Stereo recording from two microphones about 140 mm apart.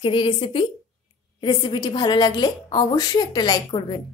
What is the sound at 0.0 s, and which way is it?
A woman's voice, 40° left (ahead or behind).